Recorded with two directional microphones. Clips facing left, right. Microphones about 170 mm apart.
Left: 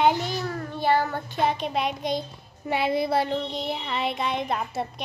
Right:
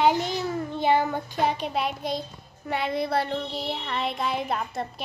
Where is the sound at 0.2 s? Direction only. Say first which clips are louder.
Right 2 dB; 15° right (ahead or behind).